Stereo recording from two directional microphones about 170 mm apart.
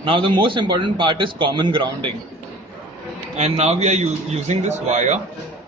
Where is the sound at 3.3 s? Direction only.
40° right (ahead or behind).